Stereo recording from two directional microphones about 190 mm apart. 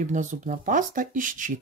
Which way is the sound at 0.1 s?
40° right (ahead or behind).